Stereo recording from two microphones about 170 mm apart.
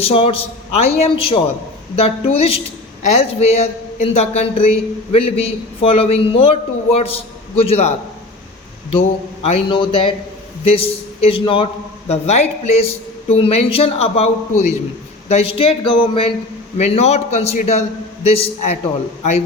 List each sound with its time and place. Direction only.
0.1 s a man's voice: 35° left (ahead or behind)
15.3 s a man's voice: 35° left (ahead or behind)